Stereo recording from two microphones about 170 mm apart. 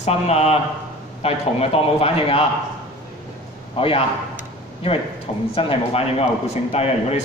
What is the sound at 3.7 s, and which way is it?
Speech, 30° left (ahead or behind).